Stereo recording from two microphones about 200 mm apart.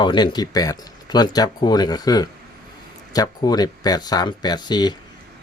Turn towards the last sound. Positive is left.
turn(degrees=20)  # may be behind; listen again after turning